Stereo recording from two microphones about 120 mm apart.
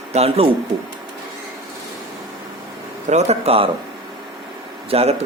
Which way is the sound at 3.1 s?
60° right (ahead or behind).